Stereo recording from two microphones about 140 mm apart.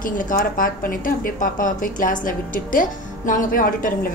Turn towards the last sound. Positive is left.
turn(degrees=80)